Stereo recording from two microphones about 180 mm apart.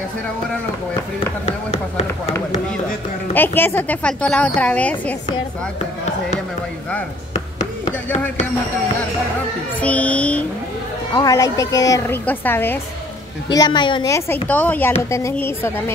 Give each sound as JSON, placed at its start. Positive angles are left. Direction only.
{"t": 1.4, "sound": "speech", "side_deg": 35}
{"t": 3.3, "sound": "a woman's voice", "side_deg": 10}
{"t": 9.8, "sound": "a woman's voice", "side_deg": 5}
{"t": 11.1, "sound": "a woman's voice", "side_deg": 20}
{"t": 13.5, "sound": "a woman's voice", "side_deg": 20}
{"t": 14.5, "sound": "a woman's voice", "side_deg": 10}